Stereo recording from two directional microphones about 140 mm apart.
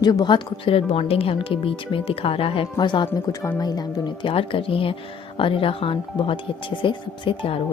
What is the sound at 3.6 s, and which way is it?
Speech, 30° left (ahead or behind).